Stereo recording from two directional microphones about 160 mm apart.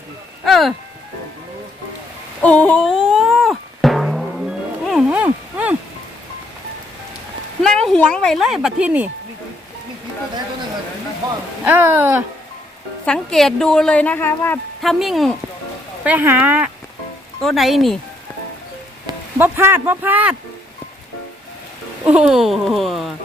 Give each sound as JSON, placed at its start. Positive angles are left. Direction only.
{"t": 0.4, "sound": "music", "side_deg": 0}
{"t": 2.4, "sound": "music", "side_deg": 10}
{"t": 7.6, "sound": "speech", "side_deg": 5}
{"t": 11.2, "sound": "rain", "side_deg": -25}
{"t": 11.6, "sound": "speech", "side_deg": -10}
{"t": 13.1, "sound": "a woman's voice", "side_deg": 5}
{"t": 14.8, "sound": "a woman's voice", "side_deg": 0}
{"t": 16.0, "sound": "a woman's voice", "side_deg": -10}
{"t": 19.4, "sound": "speech", "side_deg": -15}
{"t": 22.0, "sound": "a woman's voice", "side_deg": -10}